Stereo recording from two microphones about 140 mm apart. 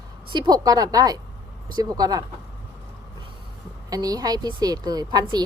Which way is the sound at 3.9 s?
25° right (ahead or behind).